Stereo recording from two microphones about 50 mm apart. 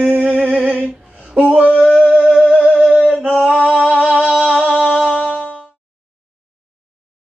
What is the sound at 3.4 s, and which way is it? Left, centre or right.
Female singing, right.